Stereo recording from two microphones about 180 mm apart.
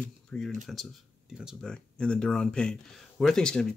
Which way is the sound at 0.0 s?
5° left (ahead or behind).